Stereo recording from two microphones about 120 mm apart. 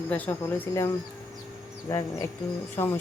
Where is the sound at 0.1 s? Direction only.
15° left (ahead or behind).